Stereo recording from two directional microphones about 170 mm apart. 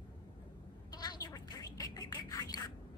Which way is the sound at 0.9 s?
25° left (ahead or behind).